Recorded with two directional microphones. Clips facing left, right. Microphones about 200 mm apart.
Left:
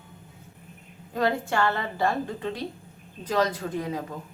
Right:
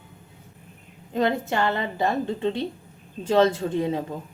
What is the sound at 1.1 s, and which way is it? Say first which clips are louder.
A woman's voice: right 2 dB; 20° right (ahead or behind).